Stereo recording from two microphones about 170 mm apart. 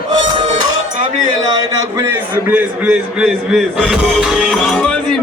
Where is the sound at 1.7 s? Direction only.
20° right (ahead or behind).